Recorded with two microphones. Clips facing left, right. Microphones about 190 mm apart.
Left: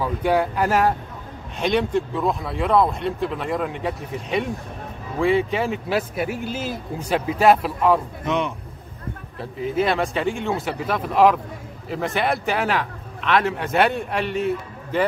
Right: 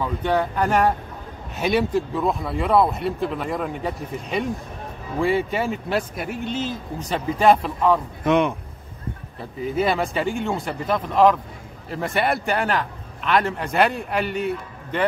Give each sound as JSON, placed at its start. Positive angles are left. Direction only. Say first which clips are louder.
{"t": 0.0, "sound": "a man's voice", "louder": "left 2 dB", "side_deg": 10}
{"t": 8.3, "sound": "speech", "louder": "right 5 dB", "side_deg": -55}
{"t": 9.7, "sound": "a man's voice", "louder": "even", "side_deg": 0}